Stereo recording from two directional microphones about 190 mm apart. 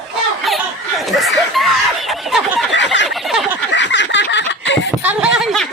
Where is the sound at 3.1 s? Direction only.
Centre (ahead or behind).